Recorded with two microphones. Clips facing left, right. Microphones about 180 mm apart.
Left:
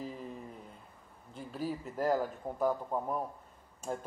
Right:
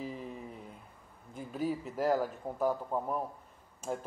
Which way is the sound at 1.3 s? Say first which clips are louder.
Right 3 dB; 10° right (ahead or behind).